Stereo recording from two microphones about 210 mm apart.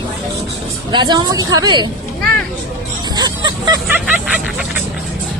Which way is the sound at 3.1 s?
20° right (ahead or behind).